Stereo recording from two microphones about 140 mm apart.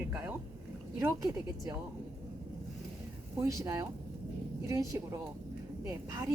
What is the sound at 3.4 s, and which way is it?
Speech, 25° right (ahead or behind).